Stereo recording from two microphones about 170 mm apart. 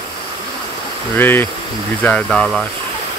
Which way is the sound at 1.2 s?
10° left (ahead or behind).